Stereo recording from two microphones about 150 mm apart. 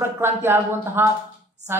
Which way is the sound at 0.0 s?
15° right (ahead or behind).